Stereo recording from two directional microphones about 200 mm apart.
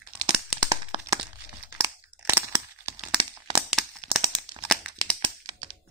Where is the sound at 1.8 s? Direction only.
15° right (ahead or behind).